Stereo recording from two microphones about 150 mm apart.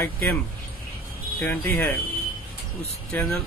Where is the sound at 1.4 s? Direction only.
10° left (ahead or behind).